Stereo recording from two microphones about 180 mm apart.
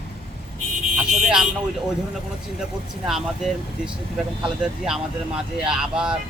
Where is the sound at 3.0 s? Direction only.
Centre (ahead or behind).